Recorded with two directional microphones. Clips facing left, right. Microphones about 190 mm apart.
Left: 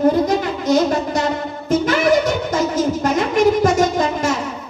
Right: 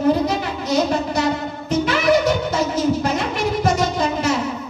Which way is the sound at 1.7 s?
45° left (ahead or behind).